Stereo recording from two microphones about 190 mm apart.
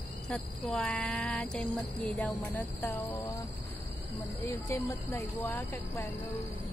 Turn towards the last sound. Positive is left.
turn(degrees=10)  # may be behind; listen again after turning